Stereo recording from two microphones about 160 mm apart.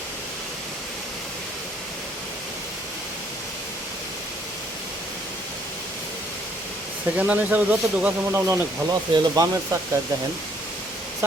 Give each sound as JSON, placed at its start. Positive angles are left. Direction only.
{"t": 7.2, "sound": "speech", "side_deg": -10}
{"t": 11.2, "sound": "speech", "side_deg": -15}